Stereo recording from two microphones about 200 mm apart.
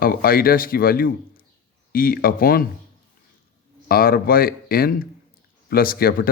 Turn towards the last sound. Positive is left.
turn(degrees=50)  # may be behind; listen again after turning